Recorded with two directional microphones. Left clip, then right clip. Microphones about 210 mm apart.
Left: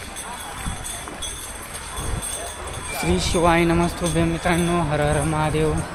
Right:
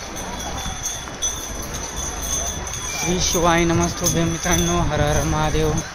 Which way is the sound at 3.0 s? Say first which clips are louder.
Even; 10° left (ahead or behind).